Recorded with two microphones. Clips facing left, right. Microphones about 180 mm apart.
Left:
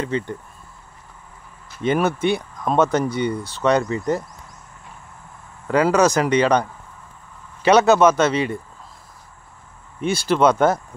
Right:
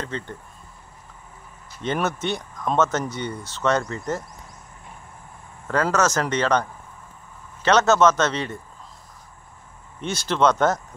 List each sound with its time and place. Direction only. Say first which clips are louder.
0.0 s speech: left 7 dB; 10° left (ahead or behind)
1.8 s speech: left 6 dB; 10° left (ahead or behind)
5.7 s speech: left 5 dB; 15° left (ahead or behind)
10.0 s speech: left 4 dB; 10° left (ahead or behind)